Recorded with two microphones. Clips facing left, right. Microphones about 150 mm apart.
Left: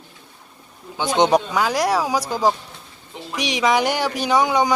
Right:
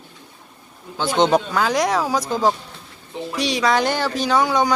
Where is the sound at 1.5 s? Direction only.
5° left (ahead or behind).